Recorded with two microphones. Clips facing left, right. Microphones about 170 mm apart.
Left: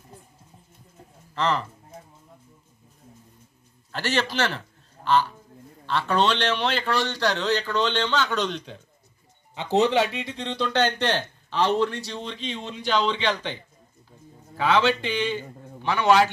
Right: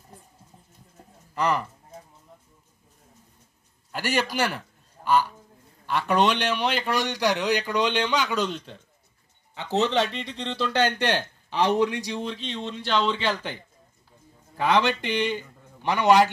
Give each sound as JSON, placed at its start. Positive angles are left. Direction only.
{"t": 1.3, "sound": "speech", "side_deg": -15}
{"t": 3.9, "sound": "a man's voice", "side_deg": -10}
{"t": 9.6, "sound": "speech", "side_deg": 15}
{"t": 14.6, "sound": "a man's voice", "side_deg": -15}